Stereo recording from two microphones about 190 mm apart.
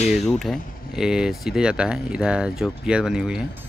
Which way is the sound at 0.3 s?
Centre (ahead or behind).